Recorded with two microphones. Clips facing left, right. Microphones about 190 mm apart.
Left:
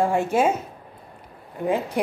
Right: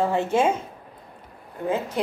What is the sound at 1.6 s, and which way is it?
Speech, 15° left (ahead or behind).